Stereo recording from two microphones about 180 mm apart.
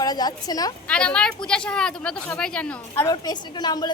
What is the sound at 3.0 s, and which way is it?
Speech, 25° left (ahead or behind).